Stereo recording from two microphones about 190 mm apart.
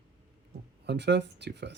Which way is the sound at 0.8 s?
65° right (ahead or behind).